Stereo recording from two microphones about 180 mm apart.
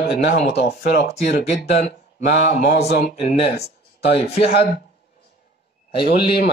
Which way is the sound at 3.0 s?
40° left (ahead or behind).